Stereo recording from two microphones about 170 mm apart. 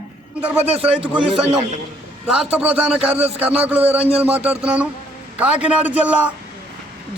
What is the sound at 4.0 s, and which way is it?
Speech, 35° right (ahead or behind).